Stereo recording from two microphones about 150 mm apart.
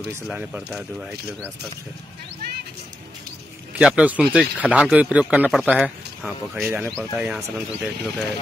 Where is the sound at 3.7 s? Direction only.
5° right (ahead or behind).